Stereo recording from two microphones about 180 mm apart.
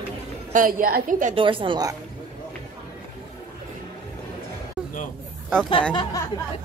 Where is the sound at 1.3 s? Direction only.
30° right (ahead or behind).